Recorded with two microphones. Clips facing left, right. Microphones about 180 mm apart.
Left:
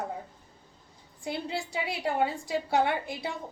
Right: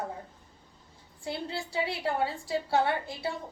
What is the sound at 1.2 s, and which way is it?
A woman's voice, 15° left (ahead or behind).